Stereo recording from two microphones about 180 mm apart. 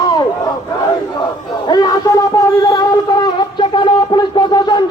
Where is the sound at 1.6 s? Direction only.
20° left (ahead or behind).